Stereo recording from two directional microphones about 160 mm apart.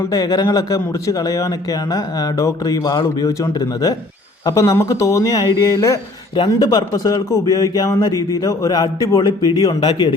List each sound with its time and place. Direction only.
0.1 s speech: 25° left (ahead or behind)